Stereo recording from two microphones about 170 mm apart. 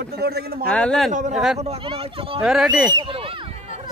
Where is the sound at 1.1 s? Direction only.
45° right (ahead or behind).